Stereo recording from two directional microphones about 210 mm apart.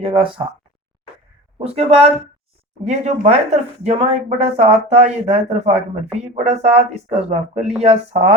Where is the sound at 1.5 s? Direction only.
30° right (ahead or behind).